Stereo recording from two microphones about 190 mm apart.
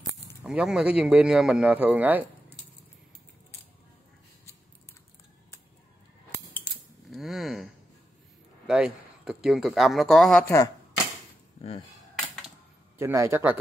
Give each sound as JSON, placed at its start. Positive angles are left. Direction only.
{"t": 0.4, "sound": "speech", "side_deg": -5}
{"t": 7.1, "sound": "a sound", "side_deg": 0}
{"t": 8.6, "sound": "speech", "side_deg": -5}
{"t": 10.4, "sound": "speech", "side_deg": 15}
{"t": 12.9, "sound": "speech", "side_deg": -15}